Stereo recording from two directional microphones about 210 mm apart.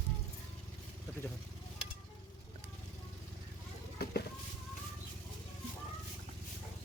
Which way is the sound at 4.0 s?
50° left (ahead or behind).